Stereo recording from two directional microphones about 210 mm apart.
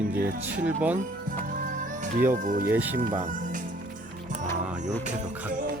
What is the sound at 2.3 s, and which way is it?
Speech, 40° right (ahead or behind).